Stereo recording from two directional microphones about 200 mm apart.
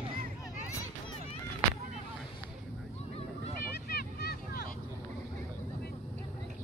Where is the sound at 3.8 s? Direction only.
50° left (ahead or behind).